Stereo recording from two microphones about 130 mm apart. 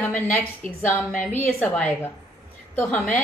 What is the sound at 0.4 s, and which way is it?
A woman's voice, 15° left (ahead or behind).